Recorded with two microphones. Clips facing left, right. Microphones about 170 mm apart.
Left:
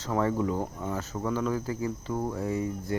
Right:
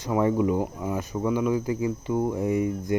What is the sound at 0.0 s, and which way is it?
Speech, 15° right (ahead or behind).